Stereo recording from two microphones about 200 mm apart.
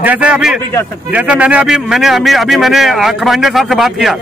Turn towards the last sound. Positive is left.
turn(degrees=0)  # may be behind; listen again after turning